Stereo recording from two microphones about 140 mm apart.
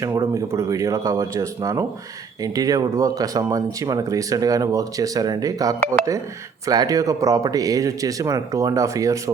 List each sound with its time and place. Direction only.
0.0 s speech: 20° right (ahead or behind)